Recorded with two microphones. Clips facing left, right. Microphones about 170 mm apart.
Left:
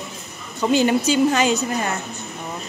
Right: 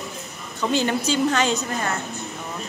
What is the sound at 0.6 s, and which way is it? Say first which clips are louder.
A woman's voice: left 5 dB; 10° left (ahead or behind).